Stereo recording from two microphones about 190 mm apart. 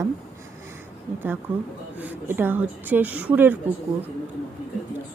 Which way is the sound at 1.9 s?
10° right (ahead or behind).